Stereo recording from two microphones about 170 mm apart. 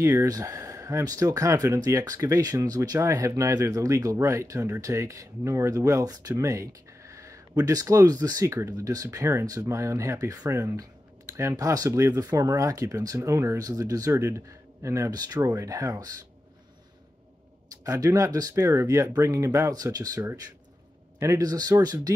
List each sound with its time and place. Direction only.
0.0 s speech: 15° right (ahead or behind)
17.8 s speech: 20° right (ahead or behind)